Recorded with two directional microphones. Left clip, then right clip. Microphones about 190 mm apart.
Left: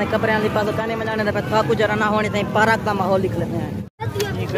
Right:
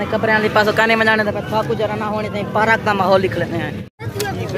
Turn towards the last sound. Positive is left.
turn(degrees=-5)  # may be behind; listen again after turning